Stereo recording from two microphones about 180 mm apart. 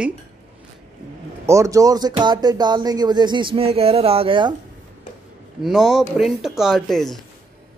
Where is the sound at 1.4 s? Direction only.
15° right (ahead or behind).